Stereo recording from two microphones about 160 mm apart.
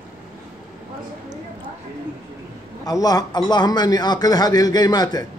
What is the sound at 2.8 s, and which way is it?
A man's voice, 25° left (ahead or behind).